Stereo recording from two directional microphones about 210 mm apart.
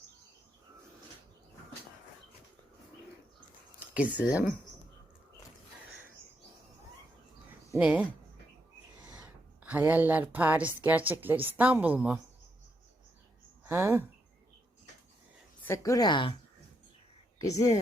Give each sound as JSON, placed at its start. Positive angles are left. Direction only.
{"t": 3.8, "sound": "speech", "side_deg": -5}
{"t": 7.7, "sound": "speech", "side_deg": -5}
{"t": 9.6, "sound": "a woman's voice", "side_deg": -10}
{"t": 13.7, "sound": "a woman's voice", "side_deg": -10}
{"t": 15.6, "sound": "a woman's voice", "side_deg": 15}
{"t": 17.4, "sound": "a woman's voice", "side_deg": 15}